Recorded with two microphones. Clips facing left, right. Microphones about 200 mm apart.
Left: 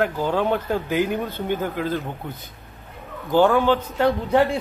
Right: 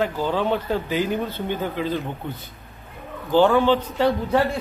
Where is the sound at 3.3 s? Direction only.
10° left (ahead or behind).